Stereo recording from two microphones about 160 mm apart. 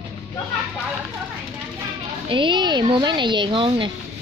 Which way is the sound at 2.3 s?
30° right (ahead or behind).